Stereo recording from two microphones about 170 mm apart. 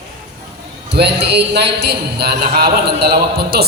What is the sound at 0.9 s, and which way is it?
A man's voice, 80° right.